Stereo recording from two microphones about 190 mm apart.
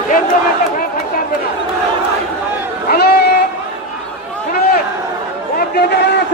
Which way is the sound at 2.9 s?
55° left (ahead or behind).